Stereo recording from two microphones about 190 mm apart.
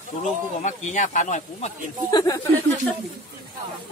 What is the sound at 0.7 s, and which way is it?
Speech, 40° left (ahead or behind).